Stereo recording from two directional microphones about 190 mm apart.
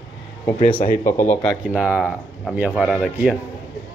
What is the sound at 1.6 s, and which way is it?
A man's voice, 5° right (ahead or behind).